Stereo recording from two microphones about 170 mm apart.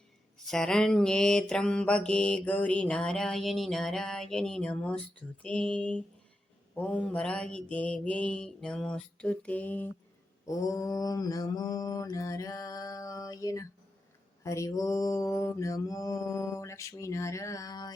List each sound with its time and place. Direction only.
0.4 s mantra: centre (ahead or behind); by 17.9 s 25° left (ahead or behind)